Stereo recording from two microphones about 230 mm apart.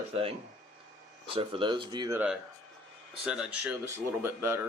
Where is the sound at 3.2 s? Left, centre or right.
Centre.